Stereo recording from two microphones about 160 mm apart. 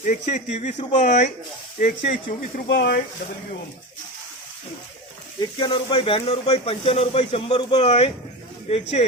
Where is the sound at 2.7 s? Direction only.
90° left.